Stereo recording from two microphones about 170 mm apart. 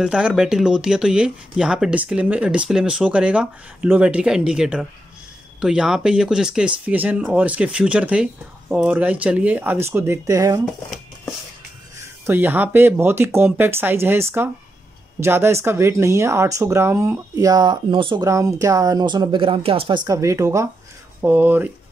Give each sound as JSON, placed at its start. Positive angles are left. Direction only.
{"t": 0.0, "sound": "speech", "side_deg": -5}
{"t": 12.0, "sound": "speech", "side_deg": -10}